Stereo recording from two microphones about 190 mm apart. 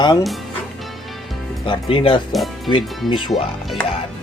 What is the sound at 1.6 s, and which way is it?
Speech, 25° left (ahead or behind).